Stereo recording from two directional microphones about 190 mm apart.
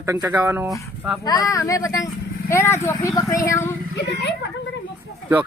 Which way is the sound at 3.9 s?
60° left (ahead or behind).